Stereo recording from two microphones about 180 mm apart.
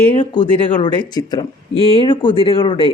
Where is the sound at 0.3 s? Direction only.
25° left (ahead or behind).